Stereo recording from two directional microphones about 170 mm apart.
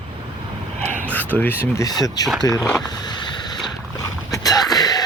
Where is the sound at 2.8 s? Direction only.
25° left (ahead or behind).